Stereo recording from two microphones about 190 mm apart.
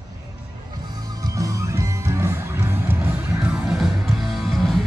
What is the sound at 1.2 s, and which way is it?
Music, 15° right (ahead or behind).